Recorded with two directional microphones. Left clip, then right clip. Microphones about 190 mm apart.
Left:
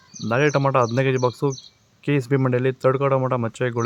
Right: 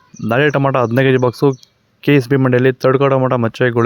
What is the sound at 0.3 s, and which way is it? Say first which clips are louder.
Speech: right 6 dB; 40° right (ahead or behind).